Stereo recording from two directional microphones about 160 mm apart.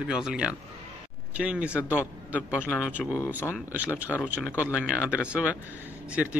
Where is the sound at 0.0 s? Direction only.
5° right (ahead or behind).